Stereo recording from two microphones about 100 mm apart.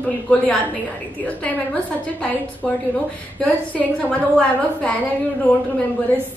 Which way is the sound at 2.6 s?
5° left (ahead or behind).